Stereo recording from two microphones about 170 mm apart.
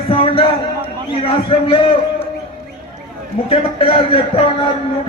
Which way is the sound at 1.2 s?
35° left (ahead or behind).